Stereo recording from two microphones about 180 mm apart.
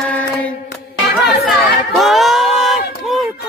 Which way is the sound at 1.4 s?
Centre (ahead or behind).